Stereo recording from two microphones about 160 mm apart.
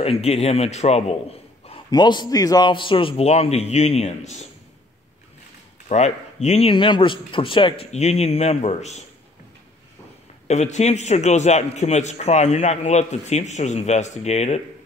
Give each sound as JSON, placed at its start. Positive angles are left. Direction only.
{"t": 0.0, "sound": "speech", "side_deg": 40}
{"t": 1.9, "sound": "speech", "side_deg": 25}
{"t": 5.9, "sound": "speech", "side_deg": 45}
{"t": 10.5, "sound": "a man's voice", "side_deg": 45}